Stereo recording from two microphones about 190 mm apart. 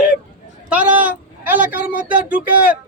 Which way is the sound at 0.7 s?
10° right (ahead or behind).